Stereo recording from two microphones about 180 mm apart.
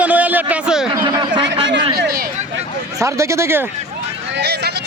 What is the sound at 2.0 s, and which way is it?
Speech, 55° right (ahead or behind).